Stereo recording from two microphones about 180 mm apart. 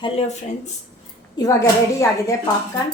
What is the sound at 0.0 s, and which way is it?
Speech, 35° left (ahead or behind).